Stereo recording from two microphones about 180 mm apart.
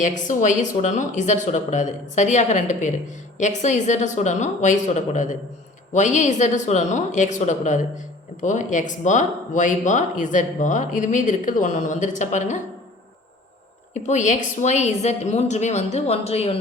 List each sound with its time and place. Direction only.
0.0 s speech: 45° left (ahead or behind)
13.9 s a woman's voice: 40° left (ahead or behind)